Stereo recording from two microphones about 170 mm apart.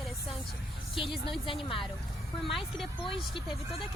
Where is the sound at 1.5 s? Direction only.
30° left (ahead or behind).